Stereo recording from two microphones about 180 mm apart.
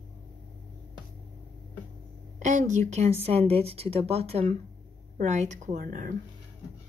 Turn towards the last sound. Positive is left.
turn(degrees=-45)  # may be behind; listen again after turning